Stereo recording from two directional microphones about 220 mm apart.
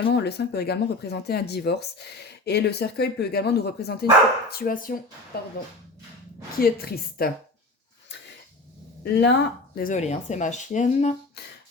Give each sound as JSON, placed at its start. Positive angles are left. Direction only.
{"t": 0.1, "sound": "speech", "side_deg": 50}
{"t": 6.6, "sound": "speech", "side_deg": 45}
{"t": 9.0, "sound": "speech", "side_deg": 50}
{"t": 11.4, "sound": "speech", "side_deg": 50}